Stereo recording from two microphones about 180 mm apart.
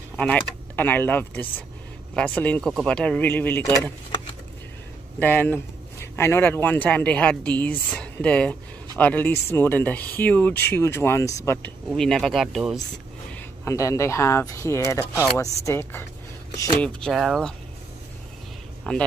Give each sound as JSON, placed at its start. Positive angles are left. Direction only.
{"t": 0.2, "sound": "speech", "side_deg": 10}
{"t": 5.2, "sound": "speech", "side_deg": 10}
{"t": 13.3, "sound": "speech", "side_deg": 15}
{"t": 16.8, "sound": "speech", "side_deg": 0}
{"t": 18.9, "sound": "speech", "side_deg": 5}